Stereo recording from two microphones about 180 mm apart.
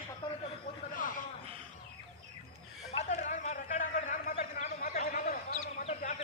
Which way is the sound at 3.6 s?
45° left (ahead or behind).